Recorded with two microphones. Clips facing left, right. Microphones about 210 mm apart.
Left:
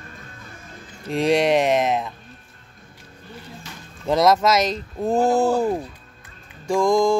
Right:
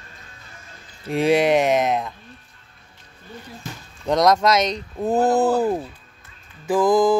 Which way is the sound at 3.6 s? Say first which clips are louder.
Right 5 dB; 50° right (ahead or behind).